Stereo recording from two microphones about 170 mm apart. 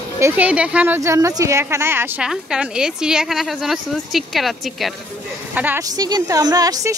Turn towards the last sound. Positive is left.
turn(degrees=-20)  # may be behind; listen again after turning